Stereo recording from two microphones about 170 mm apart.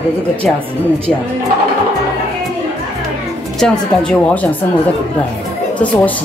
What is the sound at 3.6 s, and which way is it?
A woman's voice, 5° left (ahead or behind).